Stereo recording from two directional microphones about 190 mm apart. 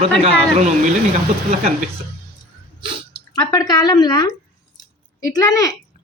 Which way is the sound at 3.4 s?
20° left (ahead or behind).